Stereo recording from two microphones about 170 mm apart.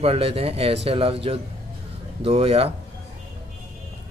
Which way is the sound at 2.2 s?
35° right (ahead or behind).